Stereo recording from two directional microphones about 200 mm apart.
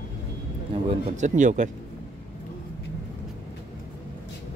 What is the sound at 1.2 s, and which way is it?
Speech, 40° right (ahead or behind).